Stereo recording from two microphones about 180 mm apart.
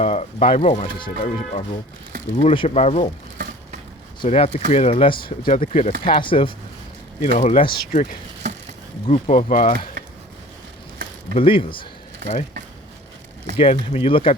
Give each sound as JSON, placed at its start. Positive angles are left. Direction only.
{"t": 0.0, "sound": "speech", "side_deg": 35}
{"t": 0.9, "sound": "speech", "side_deg": 30}
{"t": 3.3, "sound": "a sound", "side_deg": -70}
{"t": 4.2, "sound": "speech", "side_deg": 30}
{"t": 5.2, "sound": "speech", "side_deg": 55}
{"t": 5.5, "sound": "speech", "side_deg": 40}
{"t": 6.1, "sound": "speech", "side_deg": 30}
{"t": 7.3, "sound": "speech", "side_deg": 40}
{"t": 7.8, "sound": "speech", "side_deg": 55}
{"t": 9.1, "sound": "speech", "side_deg": 35}
{"t": 10.9, "sound": "a sound", "side_deg": -60}
{"t": 11.3, "sound": "speech", "side_deg": 30}
{"t": 13.6, "sound": "speech", "side_deg": 35}